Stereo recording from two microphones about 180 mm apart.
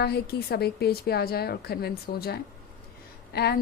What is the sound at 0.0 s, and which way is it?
A woman's voice, 60° left (ahead or behind).